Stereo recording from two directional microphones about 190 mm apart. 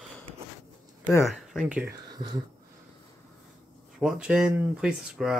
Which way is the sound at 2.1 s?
25° right (ahead or behind).